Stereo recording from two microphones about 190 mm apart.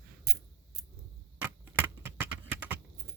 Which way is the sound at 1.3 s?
10° right (ahead or behind).